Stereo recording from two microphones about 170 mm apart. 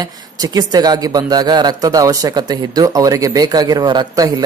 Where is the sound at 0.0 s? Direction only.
20° right (ahead or behind).